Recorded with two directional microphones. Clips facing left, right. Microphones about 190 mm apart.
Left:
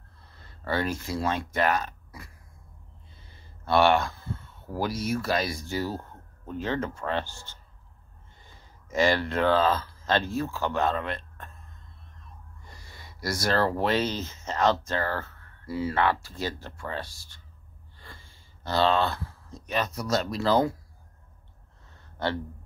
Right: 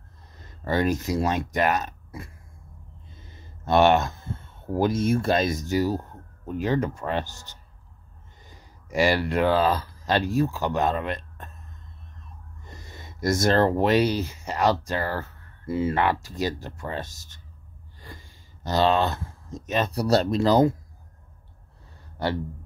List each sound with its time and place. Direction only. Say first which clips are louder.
0.3 s speech: right 3 dB; 15° right (ahead or behind)
12.6 s speech: right 6 dB; 20° right (ahead or behind)
18.0 s a sound: right 5 dB; 15° right (ahead or behind)
20.0 s speech: right 10 dB; 35° right (ahead or behind)
20.3 s speech: right 3 dB; 20° right (ahead or behind)